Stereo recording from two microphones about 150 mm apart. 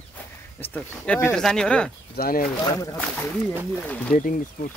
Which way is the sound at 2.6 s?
25° left (ahead or behind).